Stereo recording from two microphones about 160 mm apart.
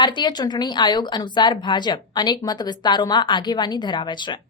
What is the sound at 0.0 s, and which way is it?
A woman's voice, 30° left (ahead or behind).